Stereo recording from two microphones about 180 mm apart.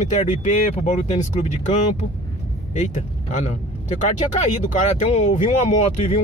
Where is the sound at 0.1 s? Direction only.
45° left (ahead or behind).